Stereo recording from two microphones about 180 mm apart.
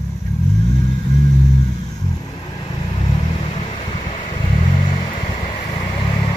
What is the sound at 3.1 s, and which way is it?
Vehicle, 35° left (ahead or behind).